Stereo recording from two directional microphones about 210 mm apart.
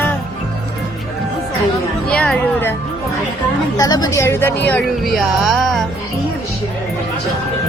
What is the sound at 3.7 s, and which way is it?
Speech, 15° left (ahead or behind).